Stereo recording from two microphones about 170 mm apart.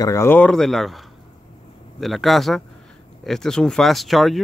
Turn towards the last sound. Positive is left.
turn(degrees=0)  # may be behind; listen again after turning